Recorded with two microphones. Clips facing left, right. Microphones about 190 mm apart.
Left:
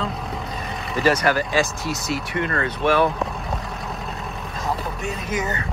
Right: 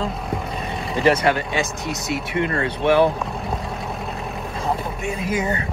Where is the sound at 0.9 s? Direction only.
25° right (ahead or behind).